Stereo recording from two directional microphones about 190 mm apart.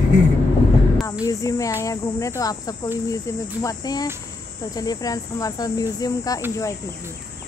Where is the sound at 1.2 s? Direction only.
15° left (ahead or behind).